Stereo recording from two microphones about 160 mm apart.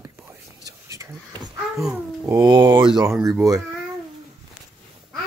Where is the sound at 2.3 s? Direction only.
25° right (ahead or behind).